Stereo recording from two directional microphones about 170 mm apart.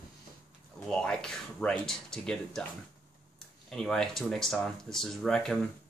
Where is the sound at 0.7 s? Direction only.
5° left (ahead or behind).